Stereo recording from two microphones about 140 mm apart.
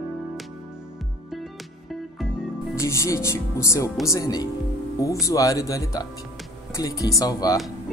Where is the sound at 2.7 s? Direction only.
20° left (ahead or behind).